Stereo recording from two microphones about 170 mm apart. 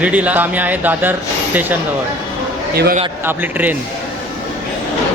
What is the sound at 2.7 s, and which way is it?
Speech, 65° right (ahead or behind).